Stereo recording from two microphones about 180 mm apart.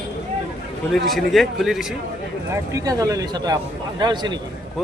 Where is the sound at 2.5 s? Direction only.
20° right (ahead or behind).